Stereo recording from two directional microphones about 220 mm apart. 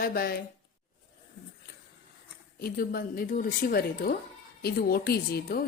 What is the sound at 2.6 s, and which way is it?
A woman's voice, 40° left (ahead or behind).